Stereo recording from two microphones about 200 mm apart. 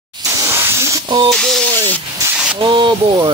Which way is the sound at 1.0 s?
25° right (ahead or behind).